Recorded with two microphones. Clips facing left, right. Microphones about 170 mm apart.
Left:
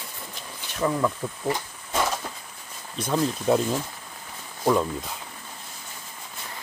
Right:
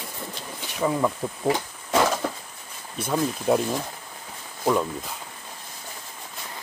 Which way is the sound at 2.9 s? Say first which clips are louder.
Even; 5° right (ahead or behind).